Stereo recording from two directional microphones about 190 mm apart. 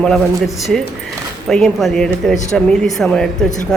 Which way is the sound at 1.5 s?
Centre (ahead or behind).